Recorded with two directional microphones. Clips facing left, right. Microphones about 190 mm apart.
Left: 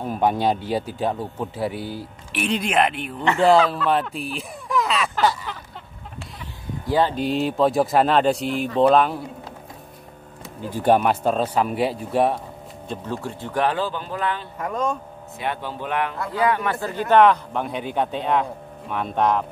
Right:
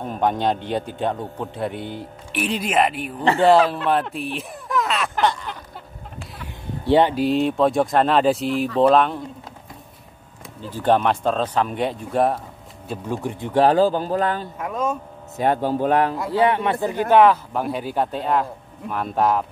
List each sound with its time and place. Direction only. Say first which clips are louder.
0.0 s speech: left 1 dB; 5° left (ahead or behind)
6.8 s a sound: right 4 dB; 25° right (ahead or behind)
7.2 s speech: right 2 dB; centre (ahead or behind)
10.6 s speech: left 1 dB; 10° left (ahead or behind); by 13.2 s 5° right (ahead or behind)
13.2 s speech: right 3 dB; 15° right (ahead or behind)
13.6 s a man's voice: right 7 dB; 40° right (ahead or behind)
14.6 s speech: left 1 dB; 5° right (ahead or behind)
15.3 s a man's voice: right 9 dB; 40° right (ahead or behind)
16.3 s speech: right 3 dB; 25° right (ahead or behind)
17.1 s speech: even; 5° right (ahead or behind)